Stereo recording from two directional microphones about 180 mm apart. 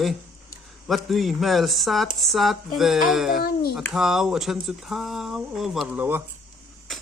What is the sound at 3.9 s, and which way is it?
Speech, 5° right (ahead or behind).